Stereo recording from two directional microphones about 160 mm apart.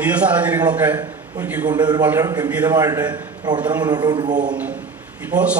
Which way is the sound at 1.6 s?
25° right (ahead or behind).